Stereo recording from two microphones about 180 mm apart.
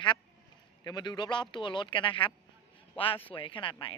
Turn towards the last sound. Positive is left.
turn(degrees=30)  # may be behind; listen again after turning